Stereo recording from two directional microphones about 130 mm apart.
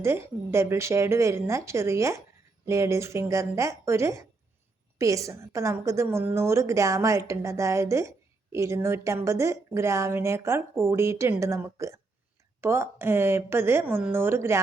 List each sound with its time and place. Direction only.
0.0 s a woman's voice: 20° right (ahead or behind)